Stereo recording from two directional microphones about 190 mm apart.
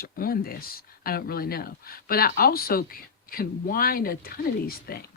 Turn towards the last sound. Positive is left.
turn(degrees=50)  # may be behind; listen again after turning